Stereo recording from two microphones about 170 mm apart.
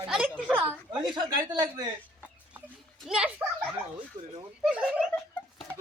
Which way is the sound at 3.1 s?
5° right (ahead or behind).